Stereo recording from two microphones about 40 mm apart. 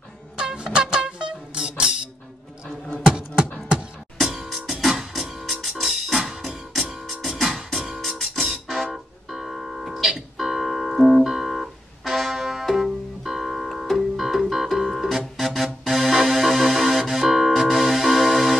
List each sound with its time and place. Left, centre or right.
0.4 s music: right
3.1 s beatboxing: right
4.2 s music: centre